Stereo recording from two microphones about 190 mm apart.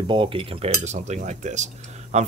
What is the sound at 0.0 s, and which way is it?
Speech, 25° right (ahead or behind).